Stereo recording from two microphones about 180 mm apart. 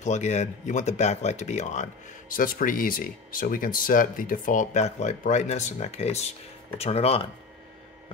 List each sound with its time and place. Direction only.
0.0 s speech: 40° left (ahead or behind)